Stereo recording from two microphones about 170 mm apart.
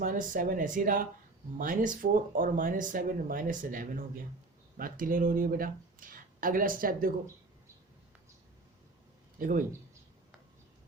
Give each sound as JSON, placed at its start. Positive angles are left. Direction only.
{"t": 0.0, "sound": "speech", "side_deg": -50}
{"t": 9.4, "sound": "speech", "side_deg": -55}